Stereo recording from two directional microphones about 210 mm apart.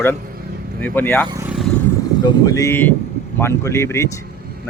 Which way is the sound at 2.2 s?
15° left (ahead or behind).